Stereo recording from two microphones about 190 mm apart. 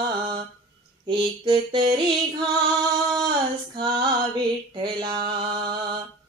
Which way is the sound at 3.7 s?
25° right (ahead or behind).